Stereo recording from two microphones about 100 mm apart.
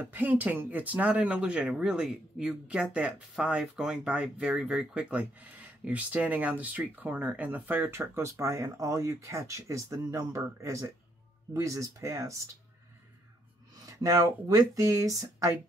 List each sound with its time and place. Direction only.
0.0 s speech: 20° right (ahead or behind)
13.8 s speech: 35° right (ahead or behind)